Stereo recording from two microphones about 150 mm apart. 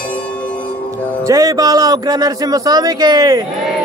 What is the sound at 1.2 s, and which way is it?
A man's voice, 25° right (ahead or behind).